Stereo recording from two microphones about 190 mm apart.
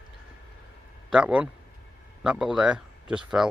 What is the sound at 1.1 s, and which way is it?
Speech, 5° right (ahead or behind).